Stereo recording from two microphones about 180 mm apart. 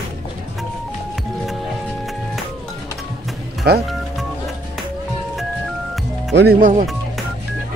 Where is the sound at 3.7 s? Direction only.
60° right (ahead or behind).